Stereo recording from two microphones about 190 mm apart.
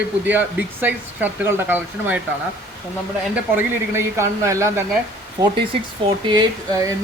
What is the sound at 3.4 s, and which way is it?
Speech, 10° right (ahead or behind).